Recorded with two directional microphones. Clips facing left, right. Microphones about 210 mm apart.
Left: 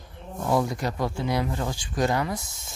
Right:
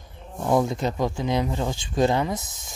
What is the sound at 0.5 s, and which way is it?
Speech, 20° right (ahead or behind).